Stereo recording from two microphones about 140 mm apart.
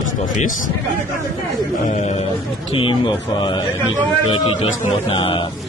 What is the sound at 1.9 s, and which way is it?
Speech, 55° left (ahead or behind).